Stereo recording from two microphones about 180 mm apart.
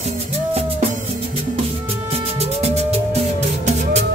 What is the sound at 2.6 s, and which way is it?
Music, 35° right (ahead or behind).